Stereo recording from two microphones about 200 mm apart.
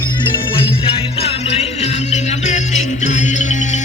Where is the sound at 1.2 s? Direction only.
30° left (ahead or behind).